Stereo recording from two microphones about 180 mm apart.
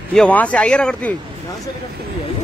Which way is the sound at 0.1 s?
5° left (ahead or behind).